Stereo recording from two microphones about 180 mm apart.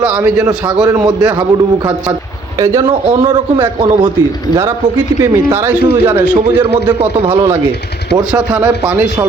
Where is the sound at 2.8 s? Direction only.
30° right (ahead or behind).